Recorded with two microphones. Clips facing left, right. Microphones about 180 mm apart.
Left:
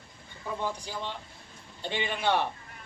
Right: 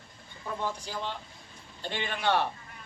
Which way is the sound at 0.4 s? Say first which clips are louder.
Left 1 dB; 10° left (ahead or behind).